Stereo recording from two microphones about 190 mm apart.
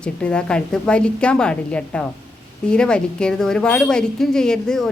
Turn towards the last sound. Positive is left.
turn(degrees=5)  # may be behind; listen again after turning